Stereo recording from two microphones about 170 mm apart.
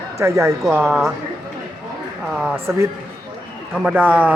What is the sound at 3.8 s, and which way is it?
Speech, 5° right (ahead or behind).